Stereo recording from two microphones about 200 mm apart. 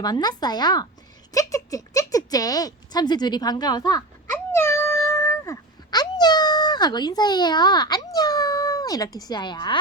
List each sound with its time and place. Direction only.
0.0 s a woman's voice: 20° left (ahead or behind)
4.5 s cat: 10° left (ahead or behind)